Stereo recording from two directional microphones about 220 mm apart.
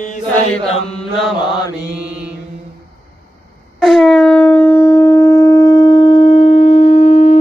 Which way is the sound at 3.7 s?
Centre (ahead or behind).